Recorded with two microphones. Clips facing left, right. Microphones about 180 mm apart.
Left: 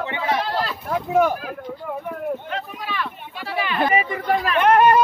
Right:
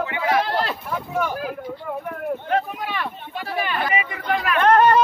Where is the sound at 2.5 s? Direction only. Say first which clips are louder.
Right 5 dB; 55° right (ahead or behind).